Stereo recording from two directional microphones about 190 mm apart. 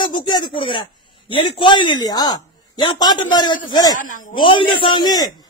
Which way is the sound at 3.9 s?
45° left (ahead or behind).